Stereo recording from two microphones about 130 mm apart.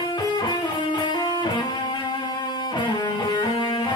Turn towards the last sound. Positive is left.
turn(degrees=35)  # may be behind; listen again after turning